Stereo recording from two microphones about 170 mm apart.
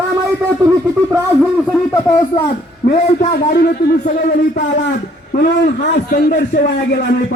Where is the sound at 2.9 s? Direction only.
45° left (ahead or behind).